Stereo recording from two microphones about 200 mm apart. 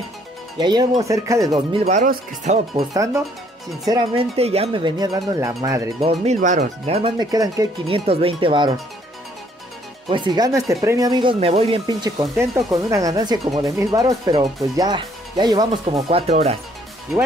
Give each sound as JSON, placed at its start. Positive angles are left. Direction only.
{"t": 0.6, "sound": "speech", "side_deg": -20}
{"t": 1.7, "sound": "speech", "side_deg": -30}
{"t": 2.7, "sound": "speech", "side_deg": -15}
{"t": 6.0, "sound": "speech", "side_deg": -35}
{"t": 7.2, "sound": "speech", "side_deg": -20}
{"t": 7.8, "sound": "speech", "side_deg": -30}
{"t": 10.0, "sound": "speech", "side_deg": -25}
{"t": 11.3, "sound": "speech", "side_deg": -30}
{"t": 11.8, "sound": "speech", "side_deg": -20}